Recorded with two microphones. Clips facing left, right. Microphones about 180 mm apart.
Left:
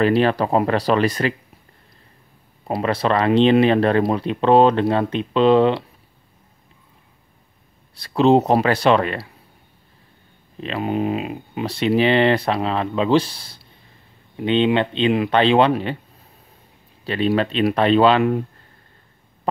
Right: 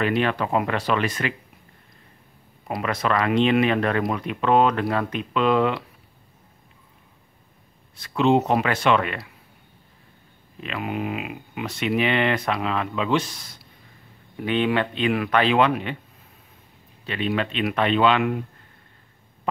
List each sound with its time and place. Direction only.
0.0 s speech: 35° left (ahead or behind)
2.7 s speech: 30° left (ahead or behind)
7.9 s speech: 35° left (ahead or behind)
10.6 s speech: 30° left (ahead or behind)
17.0 s speech: 35° left (ahead or behind)